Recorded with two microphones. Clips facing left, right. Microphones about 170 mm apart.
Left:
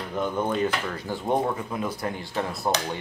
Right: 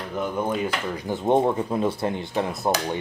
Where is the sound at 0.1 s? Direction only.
5° right (ahead or behind).